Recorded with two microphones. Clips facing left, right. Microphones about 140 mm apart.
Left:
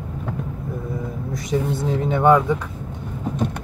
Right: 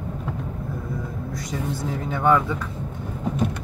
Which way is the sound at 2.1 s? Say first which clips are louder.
Left 4 dB; 20° left (ahead or behind).